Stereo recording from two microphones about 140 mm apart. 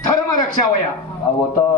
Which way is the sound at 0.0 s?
25° left (ahead or behind).